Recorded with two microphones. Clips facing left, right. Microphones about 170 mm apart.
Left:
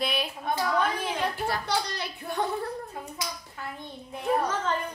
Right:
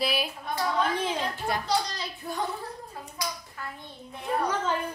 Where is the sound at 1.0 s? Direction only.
25° right (ahead or behind).